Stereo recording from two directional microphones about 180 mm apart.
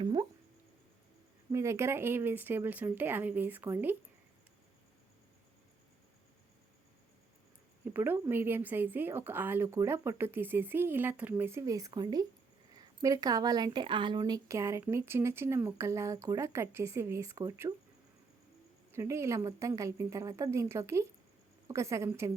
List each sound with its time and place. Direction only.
0.0 s a sound: 25° right (ahead or behind)
1.5 s a woman's voice: 15° right (ahead or behind)
7.9 s a woman's voice: 10° right (ahead or behind)
18.9 s a woman's voice: 15° right (ahead or behind)